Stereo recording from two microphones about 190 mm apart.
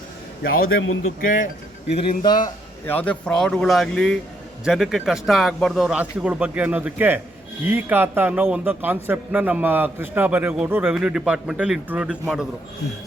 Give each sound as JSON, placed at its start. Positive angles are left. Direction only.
{"t": 0.4, "sound": "a man's voice", "side_deg": 50}
{"t": 0.7, "sound": "a man's voice", "side_deg": 80}
{"t": 1.9, "sound": "speech", "side_deg": 30}
{"t": 2.8, "sound": "a man's voice", "side_deg": 10}